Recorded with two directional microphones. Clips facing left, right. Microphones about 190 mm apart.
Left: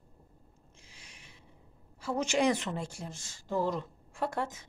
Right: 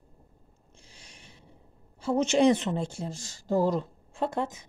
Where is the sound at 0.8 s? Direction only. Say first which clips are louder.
Right 4 dB; 30° right (ahead or behind).